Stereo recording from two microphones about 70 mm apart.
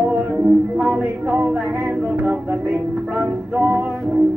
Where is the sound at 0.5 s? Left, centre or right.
Centre.